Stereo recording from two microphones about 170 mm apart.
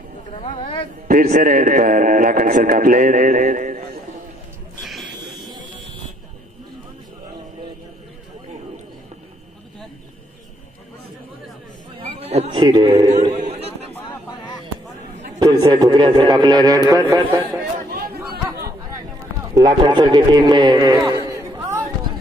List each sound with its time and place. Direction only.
0.4 s speech: 30° left (ahead or behind)
1.0 s a man's voice: 50° right (ahead or behind)
4.8 s a sound: centre (ahead or behind)
12.0 s a sound: 35° right (ahead or behind)
12.9 s a man's voice: 40° right (ahead or behind)
13.4 s a sound: 35° right (ahead or behind)
15.3 s a man's voice: 25° right (ahead or behind)
18.0 s chatter: 65° right (ahead or behind)
19.5 s speech: 25° right (ahead or behind)